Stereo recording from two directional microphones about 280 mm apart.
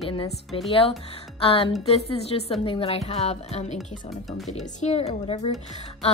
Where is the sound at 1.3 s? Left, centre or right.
Centre.